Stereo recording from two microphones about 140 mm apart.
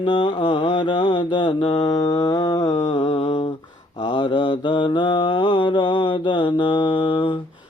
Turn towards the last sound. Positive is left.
turn(degrees=35)  # may be behind; listen again after turning